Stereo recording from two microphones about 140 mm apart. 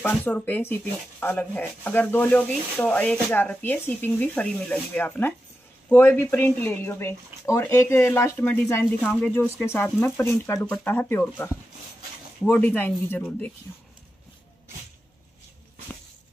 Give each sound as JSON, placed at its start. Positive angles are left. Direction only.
{"t": 0.0, "sound": "speech", "side_deg": 10}